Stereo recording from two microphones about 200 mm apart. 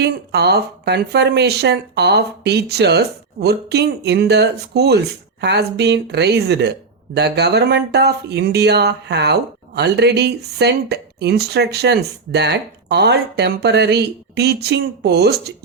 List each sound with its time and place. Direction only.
0.0 s speech: 55° right (ahead or behind)